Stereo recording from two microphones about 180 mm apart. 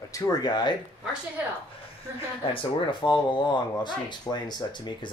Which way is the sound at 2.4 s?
30° left (ahead or behind).